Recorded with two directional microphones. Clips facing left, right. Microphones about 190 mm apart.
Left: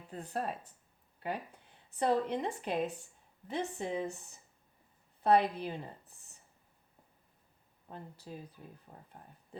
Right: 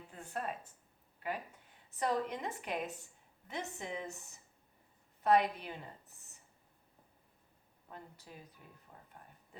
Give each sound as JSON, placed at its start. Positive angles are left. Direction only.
{"t": 0.1, "sound": "a woman's voice", "side_deg": 35}
{"t": 1.9, "sound": "a woman's voice", "side_deg": 30}
{"t": 7.9, "sound": "a woman's voice", "side_deg": 30}